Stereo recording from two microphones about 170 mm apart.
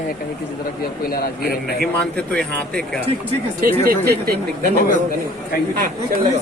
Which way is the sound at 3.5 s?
60° right (ahead or behind).